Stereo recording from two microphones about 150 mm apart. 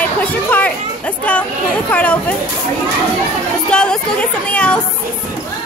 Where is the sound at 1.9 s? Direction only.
10° left (ahead or behind).